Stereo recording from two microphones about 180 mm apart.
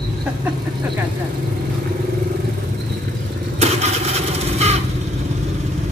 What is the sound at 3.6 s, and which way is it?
Vehicle, 40° right (ahead or behind).